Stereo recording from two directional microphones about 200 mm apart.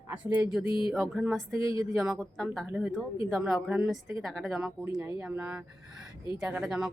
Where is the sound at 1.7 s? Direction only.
15° right (ahead or behind).